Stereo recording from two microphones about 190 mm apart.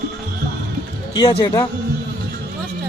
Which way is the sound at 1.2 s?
20° left (ahead or behind).